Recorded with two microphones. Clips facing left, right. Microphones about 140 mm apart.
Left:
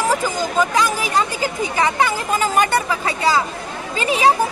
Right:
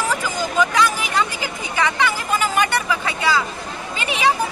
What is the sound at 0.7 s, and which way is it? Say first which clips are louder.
Speech: left 1 dB; 35° left (ahead or behind).